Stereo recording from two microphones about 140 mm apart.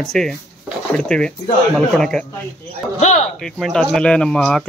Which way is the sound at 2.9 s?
55° left (ahead or behind).